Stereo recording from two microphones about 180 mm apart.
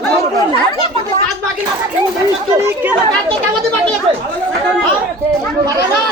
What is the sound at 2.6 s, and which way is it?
Speech, 15° right (ahead or behind).